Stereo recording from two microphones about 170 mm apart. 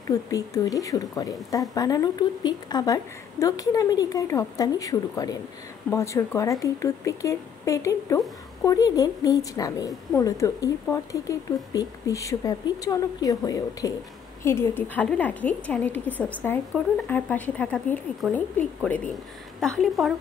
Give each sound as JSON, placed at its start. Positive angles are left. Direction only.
{"t": 0.1, "sound": "a woman's voice", "side_deg": 20}